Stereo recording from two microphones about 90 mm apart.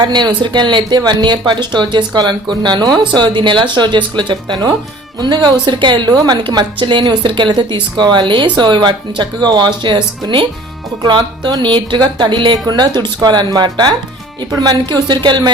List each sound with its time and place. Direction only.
0.0 s speech: 55° right (ahead or behind)
3.2 s speech: 65° right (ahead or behind)